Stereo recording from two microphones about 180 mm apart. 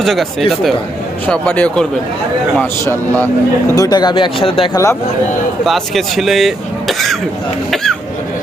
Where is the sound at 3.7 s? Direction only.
20° left (ahead or behind).